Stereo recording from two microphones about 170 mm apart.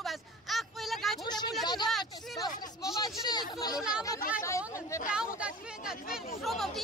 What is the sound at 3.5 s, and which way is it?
Chatter, 25° left (ahead or behind).